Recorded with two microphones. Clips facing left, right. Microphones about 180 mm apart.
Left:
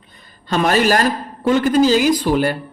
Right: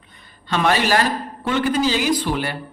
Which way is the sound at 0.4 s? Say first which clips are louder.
Left 4 dB; 40° left (ahead or behind).